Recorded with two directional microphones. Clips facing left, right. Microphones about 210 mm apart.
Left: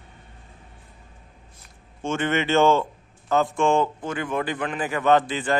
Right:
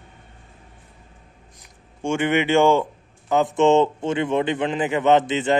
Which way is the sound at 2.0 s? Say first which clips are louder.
Right 4 dB; 15° right (ahead or behind).